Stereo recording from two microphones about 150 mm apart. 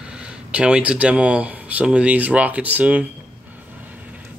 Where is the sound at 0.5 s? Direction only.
10° right (ahead or behind).